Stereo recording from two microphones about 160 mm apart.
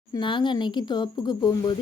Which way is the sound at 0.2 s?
30° left (ahead or behind).